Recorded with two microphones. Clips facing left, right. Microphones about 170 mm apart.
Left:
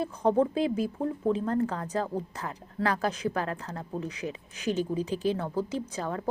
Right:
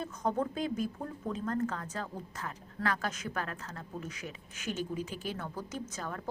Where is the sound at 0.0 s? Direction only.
30° left (ahead or behind).